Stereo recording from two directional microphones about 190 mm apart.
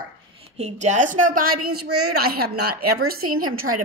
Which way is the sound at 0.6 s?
35° right (ahead or behind).